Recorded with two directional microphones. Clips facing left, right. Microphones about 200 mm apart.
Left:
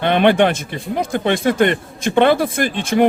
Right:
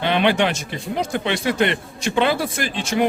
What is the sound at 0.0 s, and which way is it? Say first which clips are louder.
A man's voice: left 5 dB; 50° left (ahead or behind).